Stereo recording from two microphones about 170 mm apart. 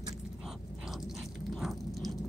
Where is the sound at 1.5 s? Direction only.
Centre (ahead or behind).